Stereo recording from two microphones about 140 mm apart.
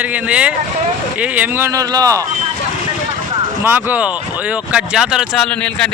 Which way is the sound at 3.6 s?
15° right (ahead or behind).